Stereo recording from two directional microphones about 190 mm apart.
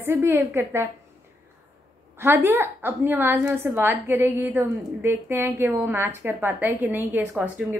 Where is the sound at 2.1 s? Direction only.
10° right (ahead or behind).